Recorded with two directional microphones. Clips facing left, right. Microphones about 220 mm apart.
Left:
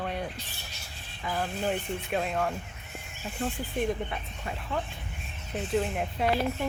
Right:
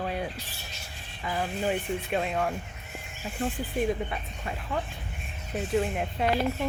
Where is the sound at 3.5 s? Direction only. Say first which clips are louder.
Right 2 dB; centre (ahead or behind).